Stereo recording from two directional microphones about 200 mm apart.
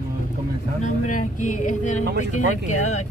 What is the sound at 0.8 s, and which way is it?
Speech, 40° left (ahead or behind).